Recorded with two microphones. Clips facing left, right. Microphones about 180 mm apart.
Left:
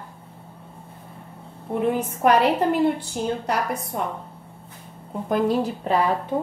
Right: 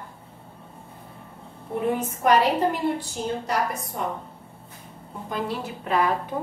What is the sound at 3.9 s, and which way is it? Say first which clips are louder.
Speech: left 2 dB; 65° left (ahead or behind).